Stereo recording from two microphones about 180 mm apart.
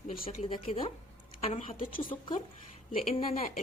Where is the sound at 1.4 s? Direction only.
35° left (ahead or behind).